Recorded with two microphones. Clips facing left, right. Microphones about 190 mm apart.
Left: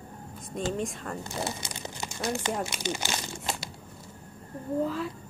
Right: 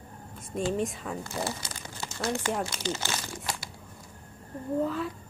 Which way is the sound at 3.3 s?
25° left (ahead or behind).